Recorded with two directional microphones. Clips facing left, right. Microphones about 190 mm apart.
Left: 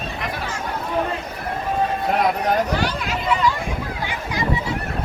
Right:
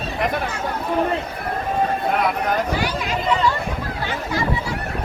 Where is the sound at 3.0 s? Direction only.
10° left (ahead or behind).